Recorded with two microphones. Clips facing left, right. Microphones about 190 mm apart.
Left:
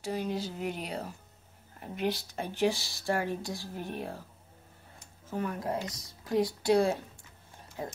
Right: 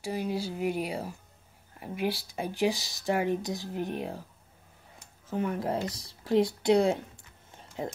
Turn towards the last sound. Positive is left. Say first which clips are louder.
# right 3 dB
turn(degrees=-20)  # may be behind; listen again after turning